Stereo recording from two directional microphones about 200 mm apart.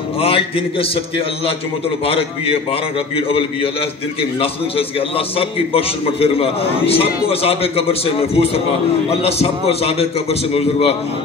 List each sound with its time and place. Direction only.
0.2 s a man's voice: 30° left (ahead or behind)